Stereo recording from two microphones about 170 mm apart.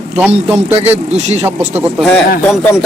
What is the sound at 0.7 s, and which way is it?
Speech, 40° right (ahead or behind).